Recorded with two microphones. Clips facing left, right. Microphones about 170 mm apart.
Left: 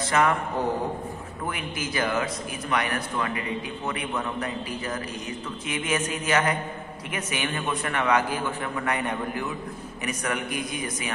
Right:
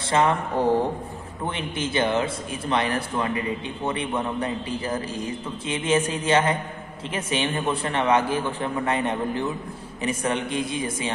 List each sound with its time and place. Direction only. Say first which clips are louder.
0.1 s a man's voice: right 3 dB; 25° right (ahead or behind)